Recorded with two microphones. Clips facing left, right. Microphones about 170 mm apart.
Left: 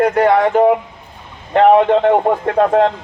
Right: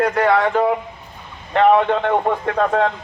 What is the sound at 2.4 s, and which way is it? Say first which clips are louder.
Speech: left 5 dB; 40° left (ahead or behind).